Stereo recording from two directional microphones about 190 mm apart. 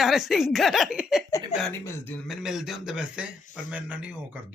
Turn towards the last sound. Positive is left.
turn(degrees=-5)  # may be behind; listen again after turning